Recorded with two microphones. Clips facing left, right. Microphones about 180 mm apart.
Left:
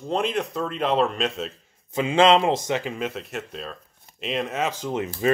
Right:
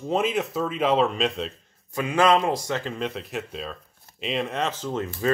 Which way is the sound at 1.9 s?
25° left (ahead or behind).